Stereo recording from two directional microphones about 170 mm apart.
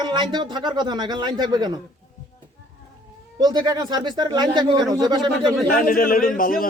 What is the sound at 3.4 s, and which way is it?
Speech, 25° right (ahead or behind).